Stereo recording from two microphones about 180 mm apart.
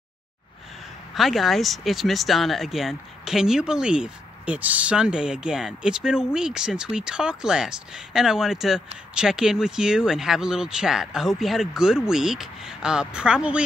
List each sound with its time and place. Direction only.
1.1 s speech: centre (ahead or behind)